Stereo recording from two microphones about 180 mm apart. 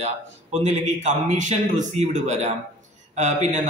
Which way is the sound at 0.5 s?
35° right (ahead or behind).